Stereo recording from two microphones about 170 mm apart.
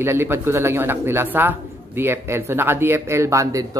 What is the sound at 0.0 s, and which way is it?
Speech, 15° right (ahead or behind).